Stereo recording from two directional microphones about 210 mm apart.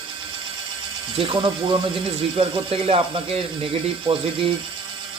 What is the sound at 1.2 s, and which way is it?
Speech, 20° right (ahead or behind).